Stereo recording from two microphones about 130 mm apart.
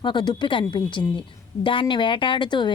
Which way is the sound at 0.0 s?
35° left (ahead or behind).